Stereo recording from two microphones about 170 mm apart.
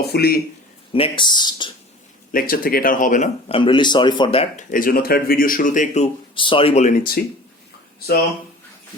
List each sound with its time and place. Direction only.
0.0 s speech: 70° left (ahead or behind)
0.9 s speech: 30° left (ahead or behind)
2.3 s speech: 60° left (ahead or behind)
3.5 s speech: 30° left (ahead or behind)
4.7 s speech: 55° left (ahead or behind)
6.3 s speech: 30° left (ahead or behind); by 7.2 s 55° left (ahead or behind)
7.9 s speech: 65° left (ahead or behind)